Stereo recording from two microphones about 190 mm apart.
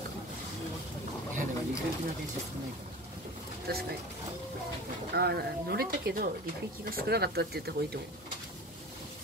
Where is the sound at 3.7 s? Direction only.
55° right (ahead or behind).